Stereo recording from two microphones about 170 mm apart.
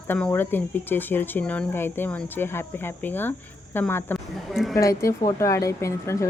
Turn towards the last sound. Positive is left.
turn(degrees=15)  # may be behind; listen again after turning